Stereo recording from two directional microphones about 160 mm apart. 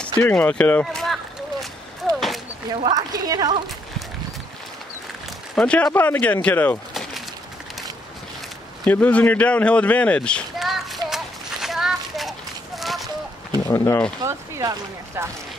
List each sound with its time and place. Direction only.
0.2 s speech: 10° left (ahead or behind)
2.1 s a sound: centre (ahead or behind)
2.7 s speech: 25° right (ahead or behind)
5.6 s speech: 5° left (ahead or behind)
6.9 s a sound: centre (ahead or behind)
8.8 s speech: 10° left (ahead or behind)
11.1 s children playing: centre (ahead or behind)
13.7 s speech: 15° left (ahead or behind)
14.2 s speech: 20° right (ahead or behind)